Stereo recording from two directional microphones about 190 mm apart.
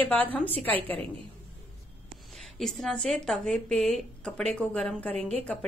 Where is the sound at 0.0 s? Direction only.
10° left (ahead or behind).